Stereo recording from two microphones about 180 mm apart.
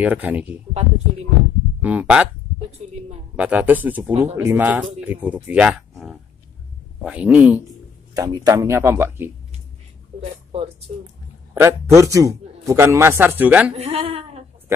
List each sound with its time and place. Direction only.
0.0 s a man's voice: 10° right (ahead or behind)
0.7 s speech: 35° right (ahead or behind)
1.8 s a man's voice: 10° right (ahead or behind)
2.8 s a sound: 40° right (ahead or behind)
3.3 s a man's voice: 10° right (ahead or behind)
8.1 s a man's voice: 20° right (ahead or behind)
10.1 s a sound: 30° right (ahead or behind)
11.5 s a man's voice: 15° right (ahead or behind)
13.7 s speech: 35° right (ahead or behind)